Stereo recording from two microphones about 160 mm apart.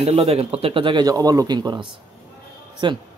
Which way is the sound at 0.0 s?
40° right (ahead or behind).